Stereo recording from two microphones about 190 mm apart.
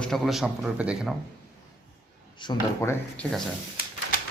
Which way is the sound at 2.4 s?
20° left (ahead or behind).